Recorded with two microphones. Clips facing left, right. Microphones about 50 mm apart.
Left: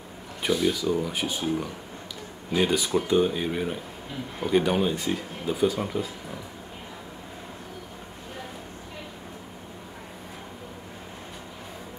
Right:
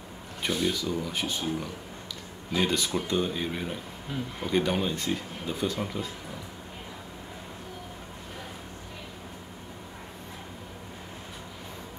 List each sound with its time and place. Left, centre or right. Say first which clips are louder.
0.4 s speech: left 4 dB; centre